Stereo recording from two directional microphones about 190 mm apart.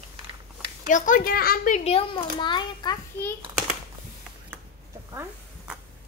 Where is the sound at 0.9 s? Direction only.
45° left (ahead or behind); by 3.0 s 25° left (ahead or behind).